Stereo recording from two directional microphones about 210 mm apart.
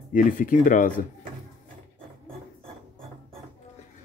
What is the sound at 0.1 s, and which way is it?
Speech, 40° left (ahead or behind).